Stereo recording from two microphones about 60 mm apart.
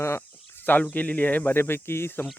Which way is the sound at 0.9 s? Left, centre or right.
Left.